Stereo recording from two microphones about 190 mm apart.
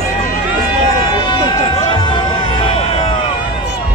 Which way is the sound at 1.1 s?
20° left (ahead or behind).